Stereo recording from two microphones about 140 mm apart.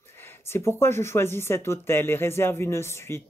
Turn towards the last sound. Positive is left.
turn(degrees=20)  # may be behind; listen again after turning